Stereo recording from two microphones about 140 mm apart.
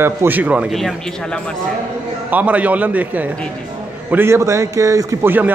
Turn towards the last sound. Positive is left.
turn(degrees=-15)  # may be behind; listen again after turning